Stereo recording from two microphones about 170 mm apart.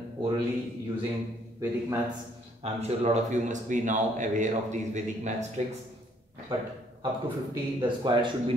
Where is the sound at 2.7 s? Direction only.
40° right (ahead or behind).